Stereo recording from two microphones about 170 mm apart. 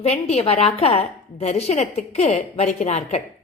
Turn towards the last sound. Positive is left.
turn(degrees=40)  # may be behind; listen again after turning